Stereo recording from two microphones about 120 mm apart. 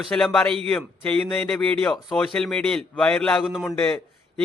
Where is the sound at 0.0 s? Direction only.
Centre (ahead or behind).